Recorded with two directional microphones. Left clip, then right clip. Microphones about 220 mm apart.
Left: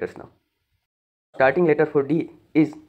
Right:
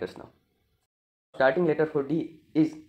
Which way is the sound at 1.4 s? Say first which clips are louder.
Left 5 dB; 15° left (ahead or behind).